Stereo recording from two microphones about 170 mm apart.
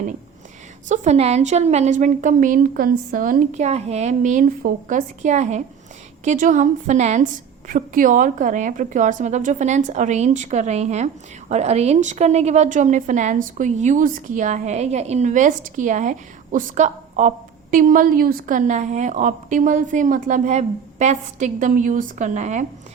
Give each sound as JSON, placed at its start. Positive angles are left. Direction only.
{"t": 0.9, "sound": "a woman's voice", "side_deg": -40}